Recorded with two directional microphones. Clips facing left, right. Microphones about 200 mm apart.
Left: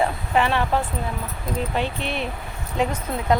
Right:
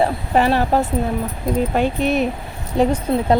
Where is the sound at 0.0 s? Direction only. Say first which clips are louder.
Right 5 dB; 40° right (ahead or behind).